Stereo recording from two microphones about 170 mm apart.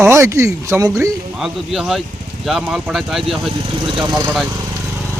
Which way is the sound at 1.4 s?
Centre (ahead or behind).